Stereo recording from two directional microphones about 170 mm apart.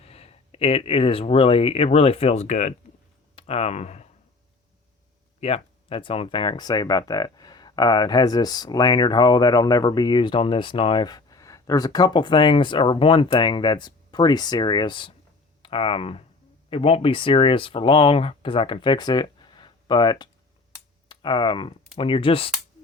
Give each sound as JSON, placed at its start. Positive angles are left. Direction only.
{"t": 0.0, "sound": "speech", "side_deg": 35}
{"t": 5.4, "sound": "speech", "side_deg": 35}